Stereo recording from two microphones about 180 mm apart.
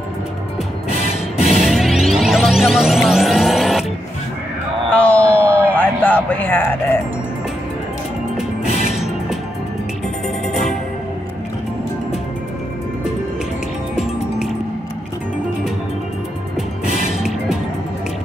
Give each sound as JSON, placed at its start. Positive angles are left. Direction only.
{"t": 1.6, "sound": "music", "side_deg": 0}
{"t": 4.9, "sound": "music", "side_deg": 10}
{"t": 8.4, "sound": "music", "side_deg": 35}